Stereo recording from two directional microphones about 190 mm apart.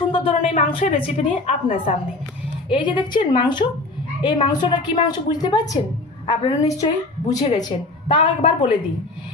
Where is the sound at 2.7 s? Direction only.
25° left (ahead or behind).